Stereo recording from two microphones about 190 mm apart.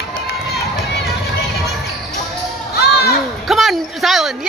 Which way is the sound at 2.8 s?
55° left (ahead or behind).